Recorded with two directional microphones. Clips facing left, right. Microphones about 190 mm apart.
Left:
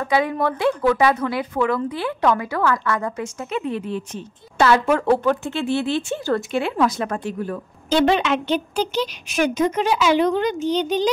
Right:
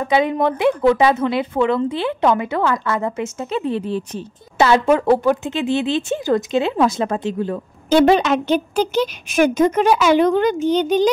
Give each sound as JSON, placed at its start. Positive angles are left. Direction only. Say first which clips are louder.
{"t": 0.0, "sound": "a woman's voice", "louder": "right 3 dB", "side_deg": -20}
{"t": 4.6, "sound": "a woman's voice", "louder": "right 3 dB", "side_deg": -20}
{"t": 7.9, "sound": "a woman's voice", "louder": "right 4 dB", "side_deg": -40}